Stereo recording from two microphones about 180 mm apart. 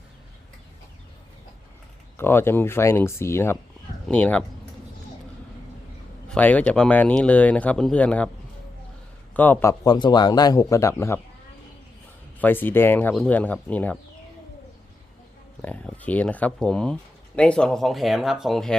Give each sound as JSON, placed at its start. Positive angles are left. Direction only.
{"t": 2.1, "sound": "speech", "side_deg": 15}
{"t": 6.2, "sound": "speech", "side_deg": 5}
{"t": 9.3, "sound": "speech", "side_deg": 10}
{"t": 12.4, "sound": "speech", "side_deg": 10}
{"t": 15.6, "sound": "speech", "side_deg": 10}